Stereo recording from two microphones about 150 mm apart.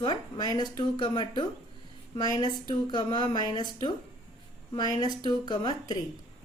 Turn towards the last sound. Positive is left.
turn(degrees=30)  # may be behind; listen again after turning